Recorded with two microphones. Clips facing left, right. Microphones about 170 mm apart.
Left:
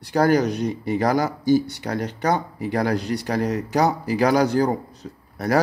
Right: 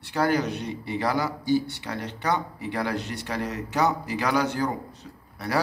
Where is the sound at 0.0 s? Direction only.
40° left (ahead or behind).